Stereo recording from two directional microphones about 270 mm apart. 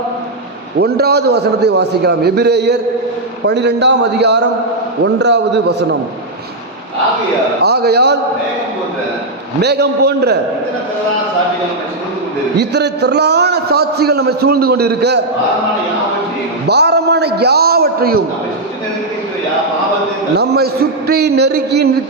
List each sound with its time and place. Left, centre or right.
0.8 s a man's voice: right
7.6 s a man's voice: right
9.6 s a man's voice: right
12.5 s a man's voice: right
16.6 s a sound: right
20.3 s a man's voice: right